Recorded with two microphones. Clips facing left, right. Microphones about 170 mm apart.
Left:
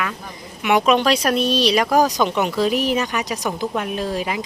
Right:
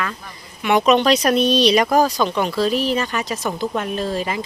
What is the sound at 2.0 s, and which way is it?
Speech, 15° left (ahead or behind).